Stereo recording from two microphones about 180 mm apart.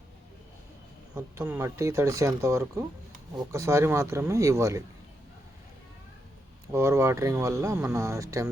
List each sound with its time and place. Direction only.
1.1 s speech: 15° right (ahead or behind)
6.7 s speech: 15° right (ahead or behind)